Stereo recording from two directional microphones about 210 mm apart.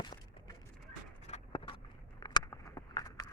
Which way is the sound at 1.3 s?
25° left (ahead or behind).